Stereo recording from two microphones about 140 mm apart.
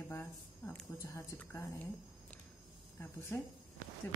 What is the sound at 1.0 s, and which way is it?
A woman's voice, 20° left (ahead or behind).